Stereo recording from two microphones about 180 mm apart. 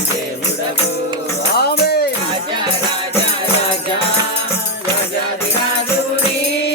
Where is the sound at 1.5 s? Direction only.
65° left (ahead or behind).